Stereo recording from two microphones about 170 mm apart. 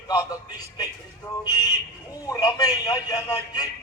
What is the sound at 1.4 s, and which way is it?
A man's voice, 25° left (ahead or behind).